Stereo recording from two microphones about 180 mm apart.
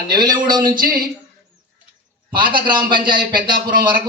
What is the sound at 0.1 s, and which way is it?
Speech, 25° right (ahead or behind).